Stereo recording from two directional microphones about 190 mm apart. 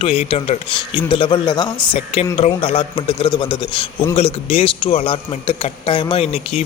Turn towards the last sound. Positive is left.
turn(degrees=30)  # may be behind; listen again after turning